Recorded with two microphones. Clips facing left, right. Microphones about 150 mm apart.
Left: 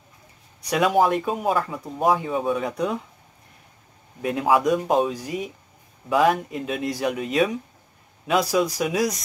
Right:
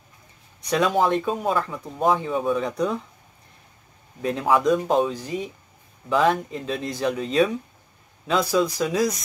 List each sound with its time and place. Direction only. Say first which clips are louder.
0.6 s speech: left 1 dB; 10° left (ahead or behind)
4.2 s speech: left 1 dB; 10° left (ahead or behind)